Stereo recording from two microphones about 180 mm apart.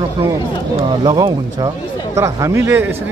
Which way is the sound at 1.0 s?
20° right (ahead or behind).